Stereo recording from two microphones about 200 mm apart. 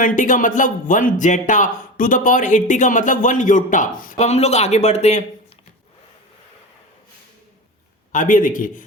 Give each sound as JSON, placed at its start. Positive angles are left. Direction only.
{"t": 0.0, "sound": "speech", "side_deg": 40}
{"t": 8.1, "sound": "speech", "side_deg": 40}